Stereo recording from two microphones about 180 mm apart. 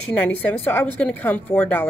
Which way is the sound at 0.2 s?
10° left (ahead or behind).